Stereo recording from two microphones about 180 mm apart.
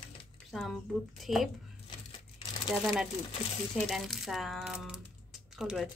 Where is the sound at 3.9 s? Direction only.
Centre (ahead or behind).